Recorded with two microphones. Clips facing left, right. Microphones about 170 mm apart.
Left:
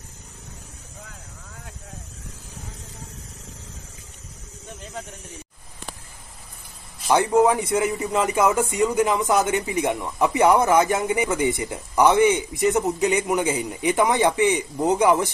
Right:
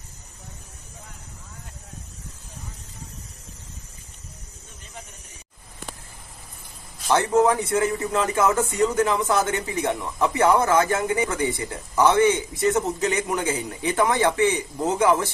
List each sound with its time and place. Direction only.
7.1 s a man's voice: 15° left (ahead or behind)